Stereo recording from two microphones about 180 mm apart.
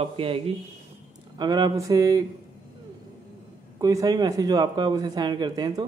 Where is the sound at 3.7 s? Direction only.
20° right (ahead or behind).